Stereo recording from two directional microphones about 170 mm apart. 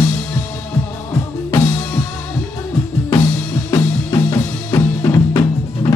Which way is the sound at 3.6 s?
20° left (ahead or behind).